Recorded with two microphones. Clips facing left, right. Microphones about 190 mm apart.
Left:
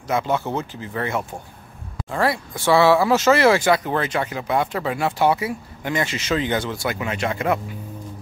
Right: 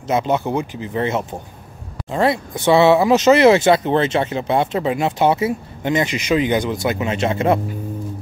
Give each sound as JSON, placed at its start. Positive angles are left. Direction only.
{"t": 0.0, "sound": "speech", "side_deg": -20}